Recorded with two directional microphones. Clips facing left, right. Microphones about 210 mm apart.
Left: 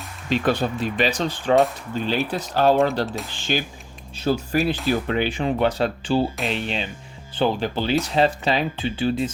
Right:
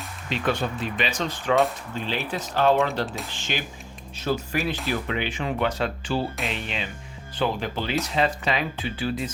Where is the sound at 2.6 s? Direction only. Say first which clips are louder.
Left 3 dB; 35° left (ahead or behind).